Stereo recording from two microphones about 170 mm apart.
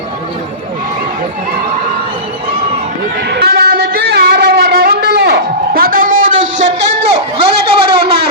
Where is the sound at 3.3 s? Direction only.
65° right (ahead or behind).